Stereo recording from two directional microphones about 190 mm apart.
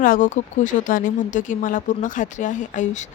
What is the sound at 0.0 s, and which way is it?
A woman's voice, 45° left (ahead or behind).